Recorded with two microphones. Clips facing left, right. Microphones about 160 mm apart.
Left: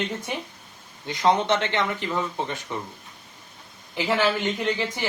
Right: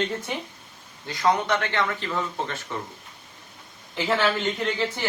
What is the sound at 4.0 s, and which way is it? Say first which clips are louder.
Speech: even; 15° left (ahead or behind).